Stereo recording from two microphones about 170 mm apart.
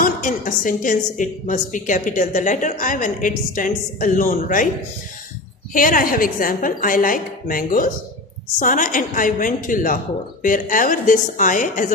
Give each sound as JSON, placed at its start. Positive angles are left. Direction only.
{"t": 0.0, "sound": "a woman's voice", "side_deg": 55}
{"t": 5.7, "sound": "a woman's voice", "side_deg": 50}